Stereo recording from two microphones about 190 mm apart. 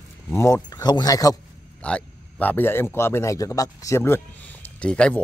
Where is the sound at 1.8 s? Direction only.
5° left (ahead or behind).